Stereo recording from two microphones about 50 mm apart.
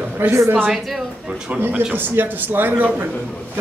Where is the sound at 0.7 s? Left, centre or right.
Centre.